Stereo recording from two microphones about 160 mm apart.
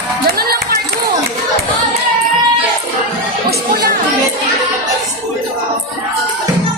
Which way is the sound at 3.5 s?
70° right (ahead or behind).